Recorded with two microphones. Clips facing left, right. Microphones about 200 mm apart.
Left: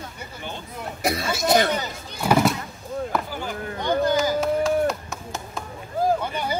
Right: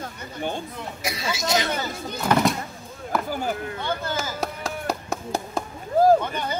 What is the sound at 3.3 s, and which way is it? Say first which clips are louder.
Speech: right 4 dB; 45° right (ahead or behind).